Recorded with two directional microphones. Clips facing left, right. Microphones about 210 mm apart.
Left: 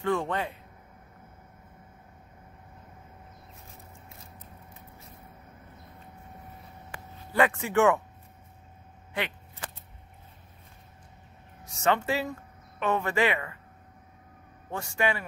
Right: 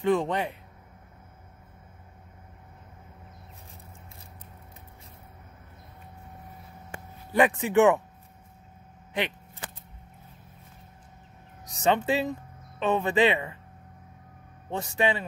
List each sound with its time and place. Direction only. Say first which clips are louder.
0.0 s speech: right 4 dB; 15° right (ahead or behind)
7.3 s speech: right 3 dB; 15° right (ahead or behind)
11.6 s speech: right 2 dB; 20° right (ahead or behind)
14.7 s speech: right 2 dB; 20° right (ahead or behind)